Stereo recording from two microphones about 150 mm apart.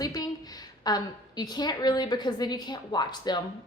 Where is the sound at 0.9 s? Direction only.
25° left (ahead or behind).